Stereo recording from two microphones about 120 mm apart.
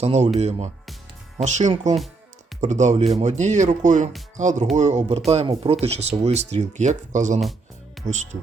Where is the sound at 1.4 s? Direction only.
85° right.